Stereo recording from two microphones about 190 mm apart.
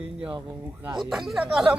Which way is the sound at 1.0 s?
Centre (ahead or behind).